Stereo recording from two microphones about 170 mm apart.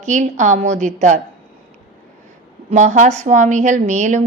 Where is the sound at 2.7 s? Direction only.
45° right (ahead or behind).